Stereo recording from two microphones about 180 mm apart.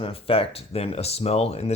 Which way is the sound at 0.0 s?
30° left (ahead or behind).